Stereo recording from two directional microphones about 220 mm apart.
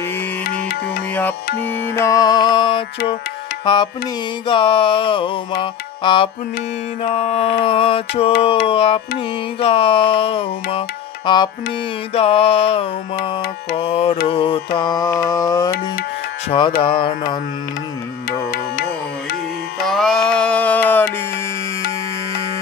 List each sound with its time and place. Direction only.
0.4 s music: 45° left (ahead or behind)
1.7 s music: 15° left (ahead or behind)
14.8 s mantra: 15° left (ahead or behind)
16.4 s music: 20° left (ahead or behind)
19.9 s music: centre (ahead or behind)